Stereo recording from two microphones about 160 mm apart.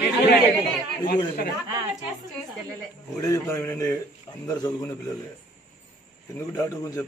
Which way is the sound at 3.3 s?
20° left (ahead or behind).